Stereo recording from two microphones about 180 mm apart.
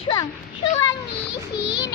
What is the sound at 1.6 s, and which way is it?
Speech, 70° left (ahead or behind).